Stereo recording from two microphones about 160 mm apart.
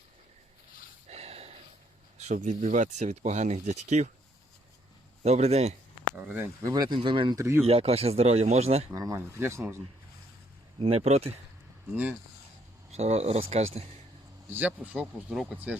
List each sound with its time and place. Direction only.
1.1 s a sound: 40° right (ahead or behind)
2.1 s speech: 45° right (ahead or behind)
5.2 s speech: 40° right (ahead or behind)
6.1 s speech: 10° right (ahead or behind)
7.6 s speech: 40° right (ahead or behind)
9.0 s speech: 20° right (ahead or behind)
10.8 s speech: 35° right (ahead or behind)
12.9 s speech: 40° right (ahead or behind)
14.5 s speech: 10° right (ahead or behind)